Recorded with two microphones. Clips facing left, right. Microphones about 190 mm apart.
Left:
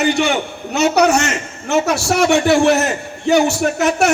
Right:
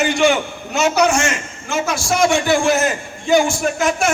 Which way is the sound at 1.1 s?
65° left (ahead or behind).